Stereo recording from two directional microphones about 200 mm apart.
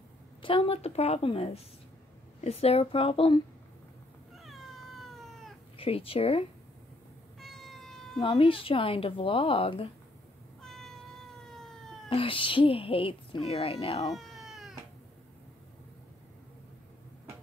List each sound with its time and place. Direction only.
0.4 s speech: 25° left (ahead or behind)
4.4 s cat: centre (ahead or behind)
5.8 s speech: 30° left (ahead or behind)
7.3 s cat: centre (ahead or behind)
8.2 s speech: 25° left (ahead or behind)
10.6 s cat: centre (ahead or behind)
12.1 s speech: 25° left (ahead or behind)
14.1 s cat: centre (ahead or behind)